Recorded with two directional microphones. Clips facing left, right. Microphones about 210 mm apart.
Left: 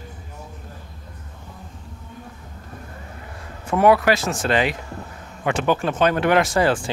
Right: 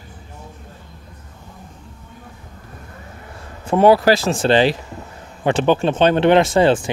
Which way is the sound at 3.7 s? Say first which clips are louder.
Right 4 dB; 30° right (ahead or behind).